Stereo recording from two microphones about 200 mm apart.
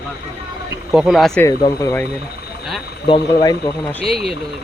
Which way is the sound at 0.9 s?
Centre (ahead or behind).